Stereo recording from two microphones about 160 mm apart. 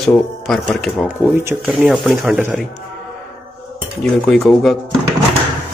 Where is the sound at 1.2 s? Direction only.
15° right (ahead or behind).